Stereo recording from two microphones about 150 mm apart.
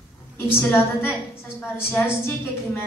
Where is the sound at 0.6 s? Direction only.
15° left (ahead or behind).